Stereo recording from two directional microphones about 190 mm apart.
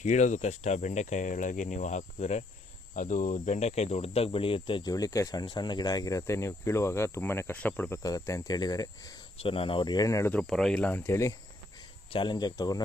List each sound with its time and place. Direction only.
0.0 s speech: 40° left (ahead or behind); by 10.4 s 15° left (ahead or behind)
10.4 s speech: centre (ahead or behind); by 12.8 s 20° left (ahead or behind)